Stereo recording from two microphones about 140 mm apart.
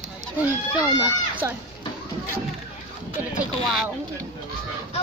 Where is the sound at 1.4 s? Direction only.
25° right (ahead or behind).